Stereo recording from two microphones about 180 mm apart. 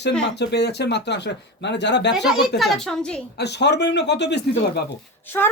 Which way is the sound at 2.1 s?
Centre (ahead or behind).